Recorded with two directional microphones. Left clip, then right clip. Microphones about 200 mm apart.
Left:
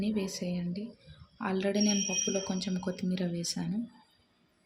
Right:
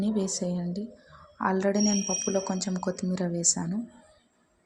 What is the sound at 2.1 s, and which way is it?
A woman's voice, 20° right (ahead or behind).